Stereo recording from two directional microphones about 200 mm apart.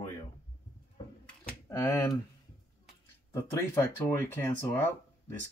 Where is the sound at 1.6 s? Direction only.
15° left (ahead or behind).